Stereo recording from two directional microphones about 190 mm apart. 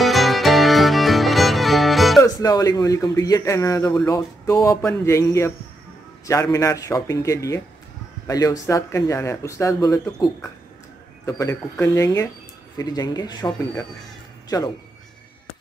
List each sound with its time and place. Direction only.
0.0 s music: centre (ahead or behind)
2.2 s speech: 20° left (ahead or behind)